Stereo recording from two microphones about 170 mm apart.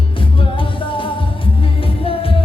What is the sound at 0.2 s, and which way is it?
Music, 30° left (ahead or behind).